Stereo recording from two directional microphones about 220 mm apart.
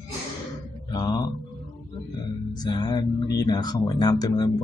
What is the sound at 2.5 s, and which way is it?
Speech, 20° left (ahead or behind).